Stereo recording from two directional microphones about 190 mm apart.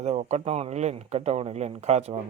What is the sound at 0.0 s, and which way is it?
Speech, 35° right (ahead or behind).